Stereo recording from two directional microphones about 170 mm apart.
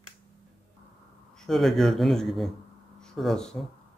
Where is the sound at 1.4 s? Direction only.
Centre (ahead or behind).